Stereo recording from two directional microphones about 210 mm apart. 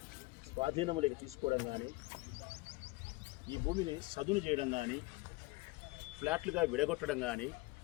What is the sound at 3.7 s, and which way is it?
Speech, 25° right (ahead or behind).